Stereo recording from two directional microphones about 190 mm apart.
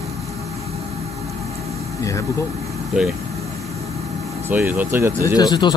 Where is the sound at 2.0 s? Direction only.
15° left (ahead or behind).